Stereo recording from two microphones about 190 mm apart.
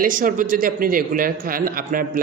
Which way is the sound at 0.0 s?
45° right (ahead or behind).